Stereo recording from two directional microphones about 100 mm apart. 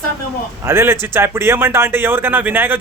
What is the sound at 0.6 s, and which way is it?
A man's voice, 25° right (ahead or behind).